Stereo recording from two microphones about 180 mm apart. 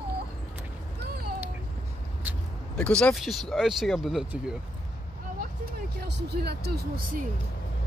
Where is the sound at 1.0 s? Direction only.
60° right (ahead or behind).